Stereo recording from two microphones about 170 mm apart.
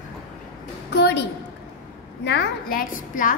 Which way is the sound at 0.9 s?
80° left.